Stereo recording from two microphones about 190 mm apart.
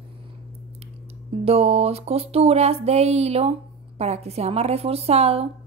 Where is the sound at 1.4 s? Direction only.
30° right (ahead or behind).